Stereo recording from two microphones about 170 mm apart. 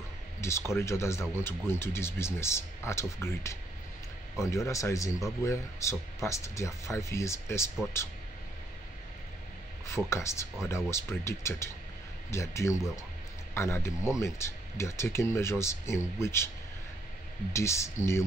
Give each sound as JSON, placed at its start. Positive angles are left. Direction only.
{"t": 0.4, "sound": "speech", "side_deg": 15}
{"t": 10.0, "sound": "speech", "side_deg": 15}
{"t": 17.5, "sound": "speech", "side_deg": 15}